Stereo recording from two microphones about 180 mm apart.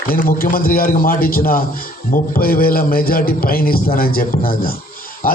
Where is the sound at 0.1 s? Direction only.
55° left (ahead or behind).